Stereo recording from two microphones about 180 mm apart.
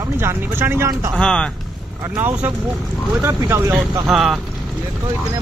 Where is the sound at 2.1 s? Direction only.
10° right (ahead or behind).